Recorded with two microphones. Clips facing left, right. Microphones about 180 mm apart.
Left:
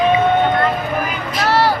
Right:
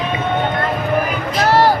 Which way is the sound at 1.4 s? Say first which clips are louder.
Right 2 dB; 45° right (ahead or behind).